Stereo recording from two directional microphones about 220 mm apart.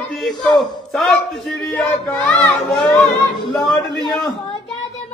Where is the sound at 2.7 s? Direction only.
20° left (ahead or behind).